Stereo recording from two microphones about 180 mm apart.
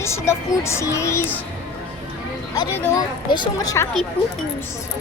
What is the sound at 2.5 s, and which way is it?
Speech, 20° left (ahead or behind).